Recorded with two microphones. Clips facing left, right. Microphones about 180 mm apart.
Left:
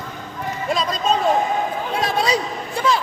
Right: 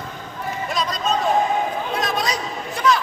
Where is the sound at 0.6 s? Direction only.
30° left (ahead or behind).